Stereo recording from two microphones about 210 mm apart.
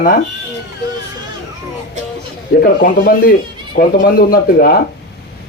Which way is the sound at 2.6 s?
40° left (ahead or behind).